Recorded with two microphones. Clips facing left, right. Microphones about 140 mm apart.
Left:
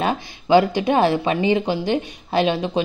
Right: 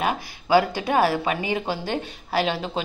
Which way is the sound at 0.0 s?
25° left (ahead or behind).